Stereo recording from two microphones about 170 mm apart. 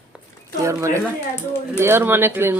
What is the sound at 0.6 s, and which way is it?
Speech, 15° right (ahead or behind).